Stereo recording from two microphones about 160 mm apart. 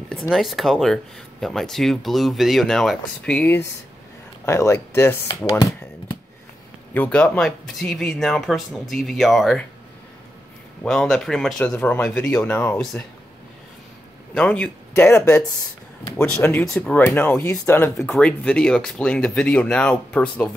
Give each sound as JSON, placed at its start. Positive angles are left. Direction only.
{"t": 0.3, "sound": "speech", "side_deg": 0}
{"t": 5.5, "sound": "a sound", "side_deg": 20}
{"t": 6.9, "sound": "speech", "side_deg": 10}
{"t": 10.8, "sound": "speech", "side_deg": 5}
{"t": 14.3, "sound": "speech", "side_deg": 5}